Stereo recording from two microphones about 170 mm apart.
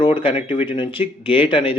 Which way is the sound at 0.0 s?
30° left (ahead or behind).